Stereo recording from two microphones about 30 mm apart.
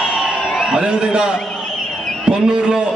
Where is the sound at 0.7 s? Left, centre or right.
Right.